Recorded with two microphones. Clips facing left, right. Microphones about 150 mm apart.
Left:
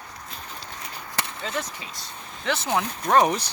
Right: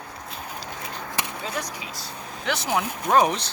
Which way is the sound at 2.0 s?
Centre (ahead or behind).